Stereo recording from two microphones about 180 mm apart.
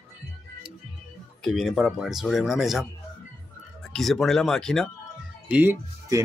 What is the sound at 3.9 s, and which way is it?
Speech, centre (ahead or behind).